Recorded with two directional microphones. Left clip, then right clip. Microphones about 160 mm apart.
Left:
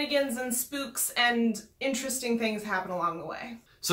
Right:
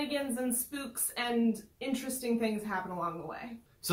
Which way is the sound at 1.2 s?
20° left (ahead or behind).